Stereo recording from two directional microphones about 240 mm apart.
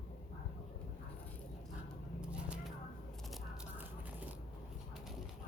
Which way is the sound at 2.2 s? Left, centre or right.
Centre.